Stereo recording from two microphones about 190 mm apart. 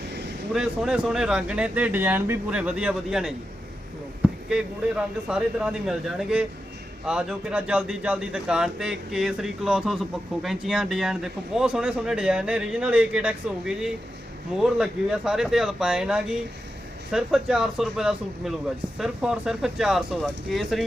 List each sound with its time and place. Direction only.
0.5 s a man's voice: 5° right (ahead or behind)
4.4 s a man's voice: 5° right (ahead or behind)